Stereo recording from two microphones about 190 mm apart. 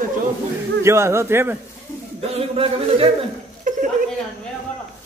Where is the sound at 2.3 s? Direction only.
30° right (ahead or behind).